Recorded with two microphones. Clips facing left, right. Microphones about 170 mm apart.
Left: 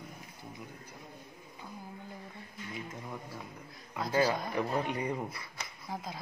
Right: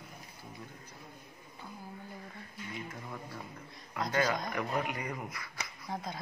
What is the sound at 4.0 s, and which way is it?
Speech, 10° left (ahead or behind).